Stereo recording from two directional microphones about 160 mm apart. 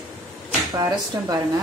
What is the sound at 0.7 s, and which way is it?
Speech, 25° right (ahead or behind).